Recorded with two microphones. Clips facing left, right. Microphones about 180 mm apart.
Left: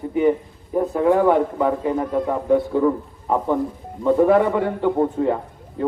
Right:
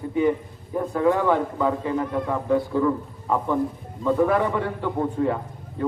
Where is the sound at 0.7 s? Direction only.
20° left (ahead or behind).